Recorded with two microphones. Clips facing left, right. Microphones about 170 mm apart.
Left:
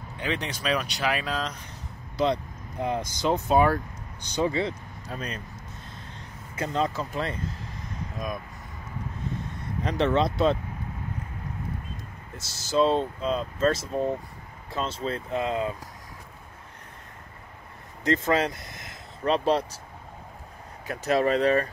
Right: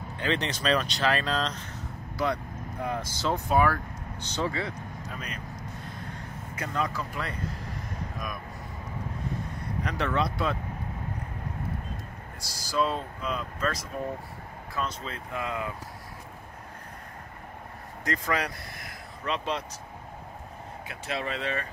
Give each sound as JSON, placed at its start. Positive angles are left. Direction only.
{"t": 0.2, "sound": "speech", "side_deg": 10}
{"t": 2.1, "sound": "speech", "side_deg": 20}
{"t": 4.2, "sound": "speech", "side_deg": 15}
{"t": 5.1, "sound": "speech", "side_deg": 30}
{"t": 5.9, "sound": "vehicle", "side_deg": 25}
{"t": 9.8, "sound": "speech", "side_deg": 25}
{"t": 12.4, "sound": "speech", "side_deg": 25}
{"t": 18.0, "sound": "speech", "side_deg": 25}
{"t": 19.2, "sound": "speech", "side_deg": 35}
{"t": 20.8, "sound": "speech", "side_deg": 40}